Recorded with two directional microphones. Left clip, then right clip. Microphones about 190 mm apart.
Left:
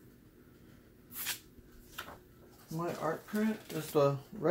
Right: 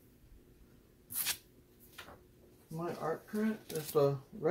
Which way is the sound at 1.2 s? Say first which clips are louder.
Right 1 dB; 45° right (ahead or behind).